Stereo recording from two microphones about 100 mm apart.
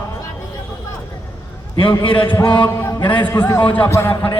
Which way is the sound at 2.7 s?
30° left (ahead or behind).